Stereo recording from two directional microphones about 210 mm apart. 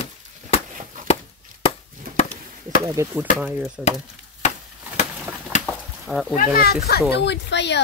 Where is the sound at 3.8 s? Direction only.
5° right (ahead or behind).